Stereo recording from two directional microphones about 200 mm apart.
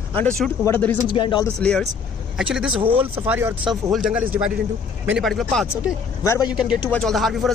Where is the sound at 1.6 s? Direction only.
5° left (ahead or behind).